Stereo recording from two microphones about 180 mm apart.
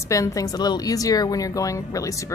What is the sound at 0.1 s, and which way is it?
A woman's voice, 20° left (ahead or behind).